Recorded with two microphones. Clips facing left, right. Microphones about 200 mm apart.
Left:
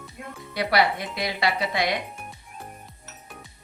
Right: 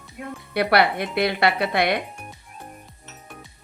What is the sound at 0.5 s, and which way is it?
A woman's voice, 60° right (ahead or behind).